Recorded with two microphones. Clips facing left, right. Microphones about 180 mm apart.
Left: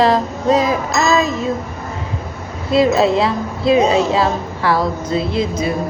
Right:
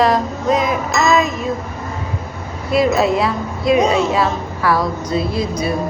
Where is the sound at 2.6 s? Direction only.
25° left (ahead or behind).